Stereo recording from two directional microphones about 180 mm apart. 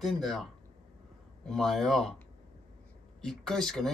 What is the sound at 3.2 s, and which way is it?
Speech, centre (ahead or behind).